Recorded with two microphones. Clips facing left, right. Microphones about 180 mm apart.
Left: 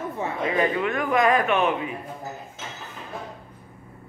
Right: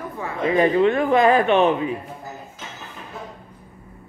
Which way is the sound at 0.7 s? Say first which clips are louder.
Right 6 dB; 30° right (ahead or behind).